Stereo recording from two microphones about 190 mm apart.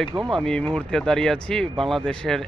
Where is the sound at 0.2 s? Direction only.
Centre (ahead or behind).